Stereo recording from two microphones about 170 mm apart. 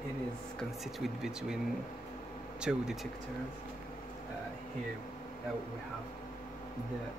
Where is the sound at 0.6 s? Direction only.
Centre (ahead or behind).